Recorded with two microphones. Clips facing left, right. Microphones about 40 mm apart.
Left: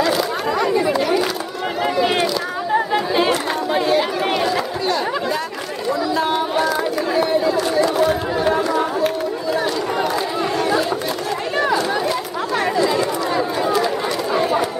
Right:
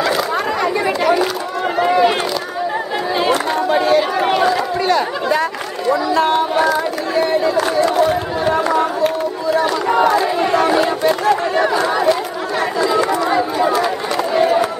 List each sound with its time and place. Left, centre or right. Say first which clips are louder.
0.0 s chatter: right 2 dB; right
1.8 s a sound: right 5 dB; centre
3.6 s chatter: right 3 dB; centre
6.7 s run: right 2 dB; centre
7.7 s a sound: right 2 dB; centre
8.7 s chatter: right 3 dB; centre
9.8 s crowd: right 7 dB; right
10.4 s chatter: right 2 dB; right
12.8 s chatter: right 3 dB; centre